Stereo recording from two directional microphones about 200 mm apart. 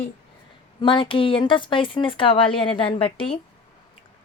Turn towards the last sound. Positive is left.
turn(degrees=25)  # may be behind; listen again after turning